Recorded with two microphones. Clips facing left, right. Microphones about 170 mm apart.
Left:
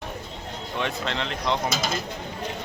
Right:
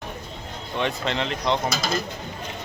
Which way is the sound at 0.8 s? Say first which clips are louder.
Right 3 dB; centre (ahead or behind).